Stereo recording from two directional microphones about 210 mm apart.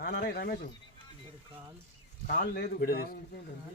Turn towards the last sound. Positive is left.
turn(degrees=45)  # may be behind; listen again after turning